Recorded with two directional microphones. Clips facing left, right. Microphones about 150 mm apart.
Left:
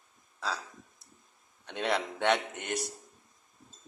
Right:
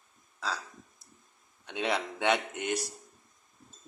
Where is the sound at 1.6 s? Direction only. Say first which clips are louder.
Even; 5° right (ahead or behind).